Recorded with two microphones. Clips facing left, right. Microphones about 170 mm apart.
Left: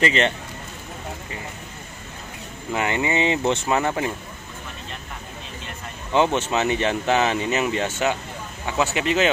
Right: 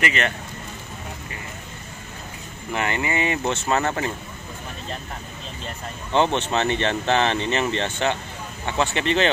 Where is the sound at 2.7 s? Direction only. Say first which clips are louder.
Left 2 dB; 20° left (ahead or behind).